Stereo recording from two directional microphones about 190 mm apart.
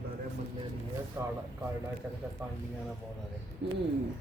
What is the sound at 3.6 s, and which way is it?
Bird, 65° right (ahead or behind).